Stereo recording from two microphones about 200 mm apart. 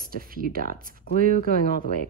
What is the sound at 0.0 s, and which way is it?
Speech, 45° right (ahead or behind).